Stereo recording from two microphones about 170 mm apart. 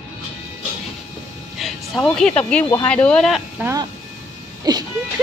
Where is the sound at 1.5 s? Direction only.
Centre (ahead or behind).